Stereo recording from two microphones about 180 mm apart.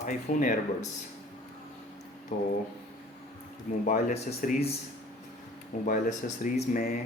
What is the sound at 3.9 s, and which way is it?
Speech, 45° left (ahead or behind).